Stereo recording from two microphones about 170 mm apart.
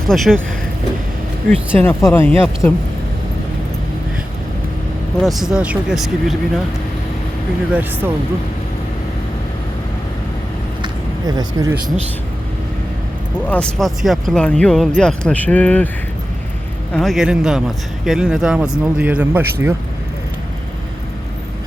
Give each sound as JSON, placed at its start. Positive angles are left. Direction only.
{"t": 0.1, "sound": "speech", "side_deg": 0}
{"t": 1.5, "sound": "speech", "side_deg": 10}
{"t": 5.2, "sound": "speech", "side_deg": 0}
{"t": 7.7, "sound": "speech", "side_deg": -10}
{"t": 10.8, "sound": "a sound", "side_deg": -25}
{"t": 13.5, "sound": "speech", "side_deg": 5}
{"t": 16.9, "sound": "speech", "side_deg": 0}